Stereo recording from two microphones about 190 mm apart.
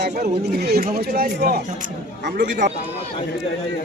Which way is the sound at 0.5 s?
55° right (ahead or behind).